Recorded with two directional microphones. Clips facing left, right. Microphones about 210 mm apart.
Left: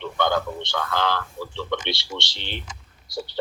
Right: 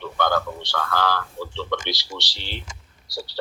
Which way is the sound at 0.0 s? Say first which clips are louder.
Even; 20° left (ahead or behind).